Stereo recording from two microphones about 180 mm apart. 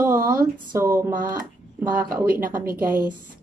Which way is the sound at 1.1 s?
50° right (ahead or behind).